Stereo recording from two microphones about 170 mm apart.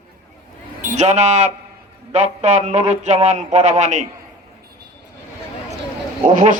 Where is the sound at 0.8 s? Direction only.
45° right (ahead or behind).